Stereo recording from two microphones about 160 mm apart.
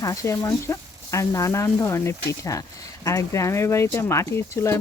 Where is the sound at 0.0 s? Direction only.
20° left (ahead or behind).